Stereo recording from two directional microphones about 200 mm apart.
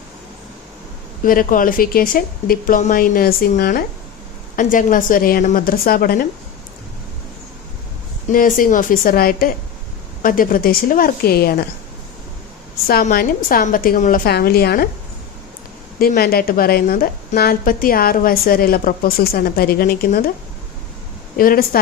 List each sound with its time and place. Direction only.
1.2 s a woman's voice: 45° left (ahead or behind)
8.3 s a woman's voice: 45° left (ahead or behind)
12.9 s a woman's voice: 50° left (ahead or behind)
16.0 s a woman's voice: 50° left (ahead or behind)
21.3 s a woman's voice: 45° left (ahead or behind)